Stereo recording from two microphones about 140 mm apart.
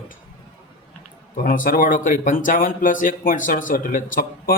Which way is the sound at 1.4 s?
85° left.